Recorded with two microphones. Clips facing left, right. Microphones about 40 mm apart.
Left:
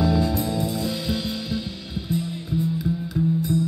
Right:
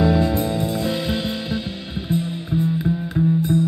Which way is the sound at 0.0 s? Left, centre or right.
Right.